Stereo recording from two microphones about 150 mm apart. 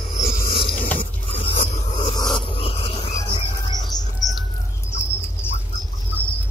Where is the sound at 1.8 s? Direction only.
30° left (ahead or behind).